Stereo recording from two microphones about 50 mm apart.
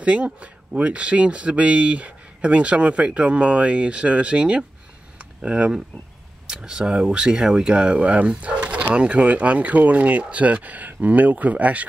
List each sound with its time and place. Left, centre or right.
0.0 s speech: right
6.5 s speech: centre